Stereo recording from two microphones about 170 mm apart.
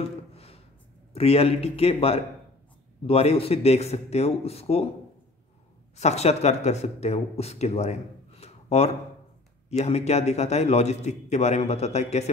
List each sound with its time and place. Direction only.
0.3 s a sound: 35° left (ahead or behind)
1.1 s a man's voice: 35° left (ahead or behind)
5.9 s a man's voice: 40° left (ahead or behind)